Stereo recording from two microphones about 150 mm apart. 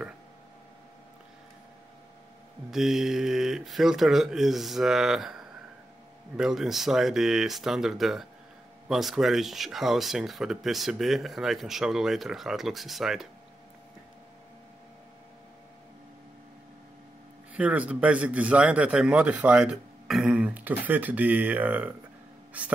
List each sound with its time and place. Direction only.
2.7 s speech: centre (ahead or behind)
17.6 s a man's voice: 10° right (ahead or behind)